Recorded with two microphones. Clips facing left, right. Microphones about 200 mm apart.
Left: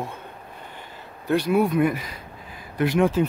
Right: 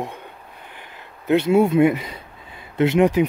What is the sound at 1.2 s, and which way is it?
Speech, 25° right (ahead or behind).